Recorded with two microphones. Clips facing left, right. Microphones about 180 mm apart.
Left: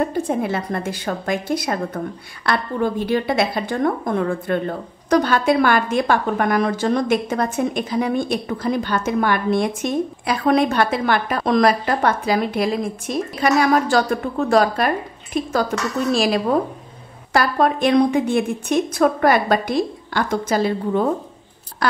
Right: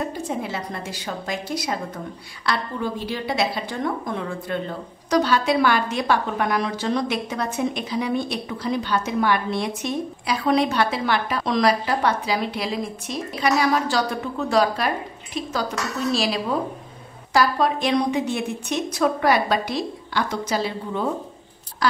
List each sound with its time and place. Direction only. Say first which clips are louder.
0.0 s a woman's voice: left 6 dB; 55° left (ahead or behind)